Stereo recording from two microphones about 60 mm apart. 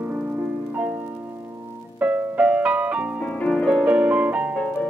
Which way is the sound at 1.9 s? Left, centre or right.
Right.